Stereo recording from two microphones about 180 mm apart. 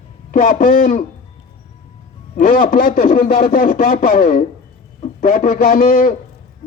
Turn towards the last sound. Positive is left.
turn(degrees=50)  # may be behind; listen again after turning